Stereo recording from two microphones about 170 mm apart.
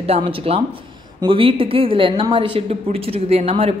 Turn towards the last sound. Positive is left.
turn(degrees=-40)  # may be behind; listen again after turning